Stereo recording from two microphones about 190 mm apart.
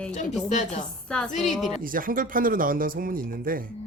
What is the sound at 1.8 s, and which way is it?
Speech, 45° right (ahead or behind).